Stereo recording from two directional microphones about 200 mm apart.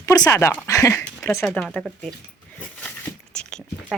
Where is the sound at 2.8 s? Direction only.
5° left (ahead or behind).